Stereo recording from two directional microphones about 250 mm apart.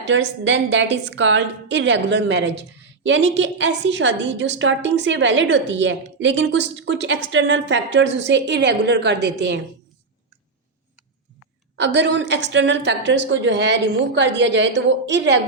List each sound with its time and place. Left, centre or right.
0.1 s a woman's voice: right
11.8 s a woman's voice: right